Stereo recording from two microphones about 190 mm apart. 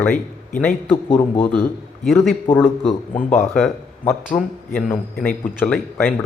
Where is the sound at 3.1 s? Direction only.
40° left (ahead or behind).